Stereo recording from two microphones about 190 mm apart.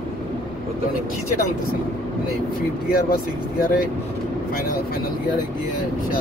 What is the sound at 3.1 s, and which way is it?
Speech, 50° left (ahead or behind).